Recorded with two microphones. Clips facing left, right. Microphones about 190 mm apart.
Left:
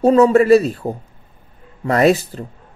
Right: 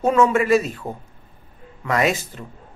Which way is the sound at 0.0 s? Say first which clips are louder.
Left 6 dB; 35° left (ahead or behind).